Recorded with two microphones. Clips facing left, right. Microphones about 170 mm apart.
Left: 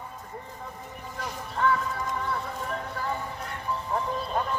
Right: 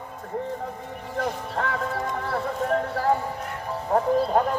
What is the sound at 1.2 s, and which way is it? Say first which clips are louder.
Music: even; 70° right (ahead or behind).